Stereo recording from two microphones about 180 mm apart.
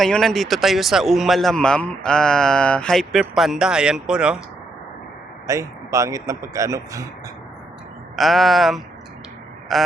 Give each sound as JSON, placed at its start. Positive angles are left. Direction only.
{"t": 0.0, "sound": "a man's voice", "side_deg": 5}
{"t": 5.5, "sound": "speech", "side_deg": -15}
{"t": 8.1, "sound": "a man's voice", "side_deg": 0}